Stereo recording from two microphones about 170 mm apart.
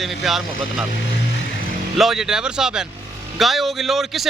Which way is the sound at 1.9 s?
Centre (ahead or behind).